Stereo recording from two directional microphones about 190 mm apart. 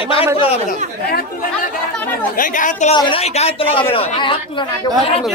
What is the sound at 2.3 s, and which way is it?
Speech, 45° left (ahead or behind).